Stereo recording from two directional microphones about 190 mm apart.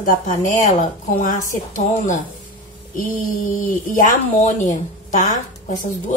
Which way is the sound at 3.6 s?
45° left (ahead or behind).